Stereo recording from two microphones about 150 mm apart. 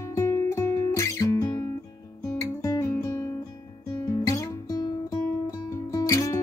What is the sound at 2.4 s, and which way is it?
Guitar, 20° left (ahead or behind).